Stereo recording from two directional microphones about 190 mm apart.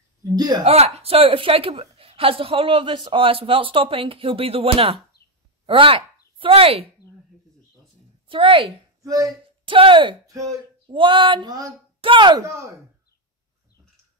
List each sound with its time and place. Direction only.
0.4 s a woman's voice: 20° right (ahead or behind)
0.7 s a woman's voice: 30° right (ahead or behind)
8.3 s speech: 25° right (ahead or behind)